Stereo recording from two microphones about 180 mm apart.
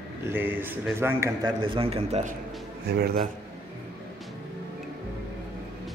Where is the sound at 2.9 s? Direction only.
60° right (ahead or behind).